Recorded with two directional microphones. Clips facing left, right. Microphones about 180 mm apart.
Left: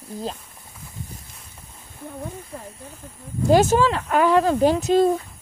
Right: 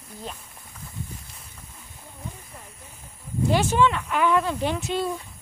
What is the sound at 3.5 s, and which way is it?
Speech, 40° left (ahead or behind).